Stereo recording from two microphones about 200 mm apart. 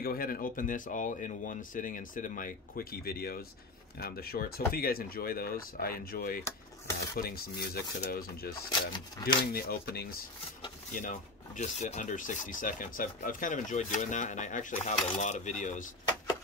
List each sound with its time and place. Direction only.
0.0 s speech: 45° left (ahead or behind)